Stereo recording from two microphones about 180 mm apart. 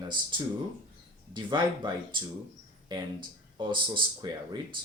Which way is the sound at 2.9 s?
25° right (ahead or behind).